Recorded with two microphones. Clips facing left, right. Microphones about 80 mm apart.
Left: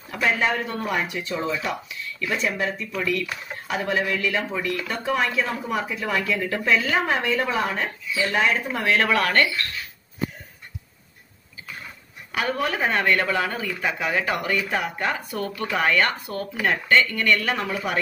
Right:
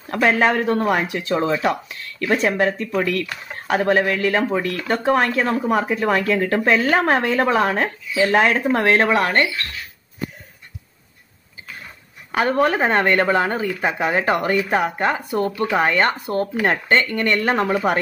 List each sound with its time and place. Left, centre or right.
0.1 s speech: right
8.8 s speech: right
12.3 s speech: right